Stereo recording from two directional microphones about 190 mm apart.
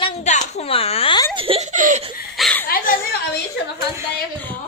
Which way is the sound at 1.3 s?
30° right (ahead or behind).